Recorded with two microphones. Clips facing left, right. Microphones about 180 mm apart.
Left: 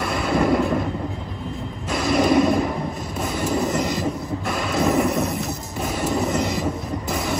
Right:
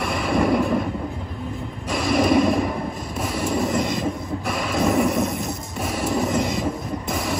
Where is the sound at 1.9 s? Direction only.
Centre (ahead or behind).